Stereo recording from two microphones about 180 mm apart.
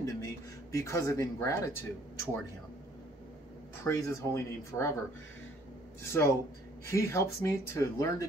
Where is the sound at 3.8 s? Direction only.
15° left (ahead or behind).